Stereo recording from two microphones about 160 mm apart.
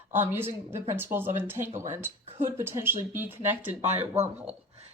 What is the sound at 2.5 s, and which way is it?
Speech, 15° right (ahead or behind).